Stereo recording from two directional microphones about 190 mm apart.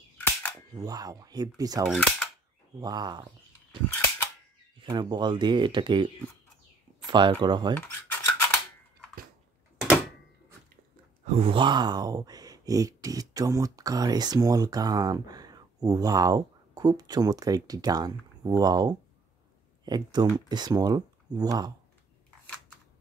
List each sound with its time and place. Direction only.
0.7 s speech: 20° right (ahead or behind)
1.9 s cap gun: centre (ahead or behind)
2.8 s speech: 20° right (ahead or behind)
4.8 s speech: 25° right (ahead or behind)
7.1 s speech: 25° right (ahead or behind)
7.7 s a sound: 10° left (ahead or behind)
11.2 s speech: 30° right (ahead or behind)